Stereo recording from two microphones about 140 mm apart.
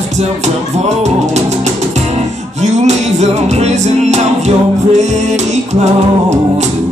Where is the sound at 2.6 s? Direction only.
55° right (ahead or behind).